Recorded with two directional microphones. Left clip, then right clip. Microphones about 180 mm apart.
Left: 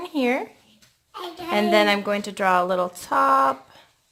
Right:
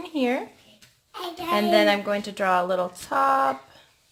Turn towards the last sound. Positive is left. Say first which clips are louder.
# left 3 dB
turn(degrees=25)  # may be behind; listen again after turning